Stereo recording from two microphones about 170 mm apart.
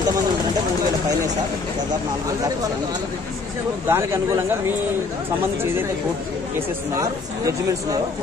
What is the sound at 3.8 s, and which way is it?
Speech, 15° right (ahead or behind).